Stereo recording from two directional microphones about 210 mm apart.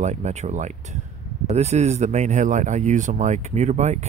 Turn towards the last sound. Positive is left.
turn(degrees=-30)  # may be behind; listen again after turning